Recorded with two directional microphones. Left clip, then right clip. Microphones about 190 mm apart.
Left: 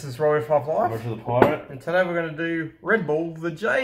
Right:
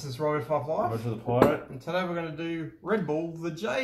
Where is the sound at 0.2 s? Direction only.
25° left (ahead or behind).